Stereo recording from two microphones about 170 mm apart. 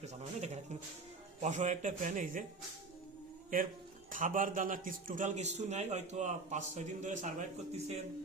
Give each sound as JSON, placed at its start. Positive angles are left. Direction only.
{"t": 0.0, "sound": "a man's voice", "side_deg": -40}
{"t": 4.1, "sound": "a man's voice", "side_deg": -50}